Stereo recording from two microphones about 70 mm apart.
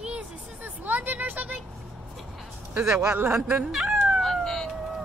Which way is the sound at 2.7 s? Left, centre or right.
Right.